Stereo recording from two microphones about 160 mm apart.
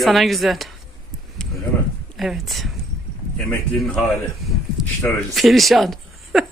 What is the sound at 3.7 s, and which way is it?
Speech, 5° left (ahead or behind).